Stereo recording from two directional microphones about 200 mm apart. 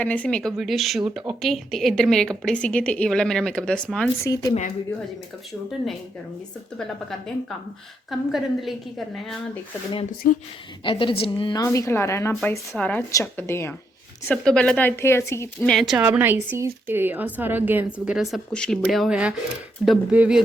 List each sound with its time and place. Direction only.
0.0 s a woman's voice: 5° left (ahead or behind)
4.2 s a woman's voice: 15° left (ahead or behind)
8.1 s a woman's voice: centre (ahead or behind)
10.8 s a woman's voice: 25° left (ahead or behind)
15.7 s a woman's voice: centre (ahead or behind)